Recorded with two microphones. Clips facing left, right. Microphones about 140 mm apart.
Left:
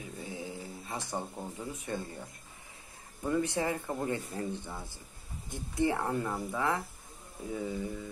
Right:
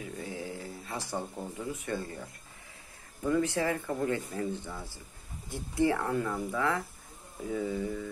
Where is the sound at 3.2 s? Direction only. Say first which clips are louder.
Right 2 dB; 20° left (ahead or behind).